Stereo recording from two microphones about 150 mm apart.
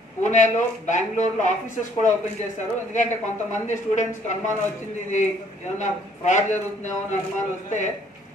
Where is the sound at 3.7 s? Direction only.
55° left (ahead or behind).